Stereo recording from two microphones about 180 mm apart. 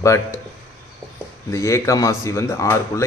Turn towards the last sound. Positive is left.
turn(degrees=15)  # may be behind; listen again after turning